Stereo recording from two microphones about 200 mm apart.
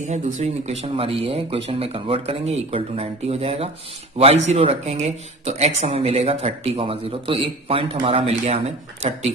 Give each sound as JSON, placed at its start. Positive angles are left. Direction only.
{"t": 0.1, "sound": "speech", "side_deg": -35}